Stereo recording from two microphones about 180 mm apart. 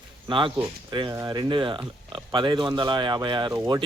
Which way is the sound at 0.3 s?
25° right (ahead or behind).